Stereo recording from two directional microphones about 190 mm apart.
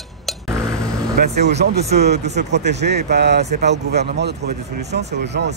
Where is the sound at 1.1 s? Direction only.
60° right (ahead or behind).